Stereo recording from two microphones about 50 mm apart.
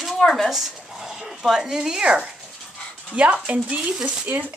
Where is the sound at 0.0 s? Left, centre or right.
Centre.